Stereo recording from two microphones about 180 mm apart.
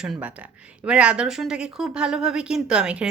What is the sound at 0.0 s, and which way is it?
Speech, 5° right (ahead or behind).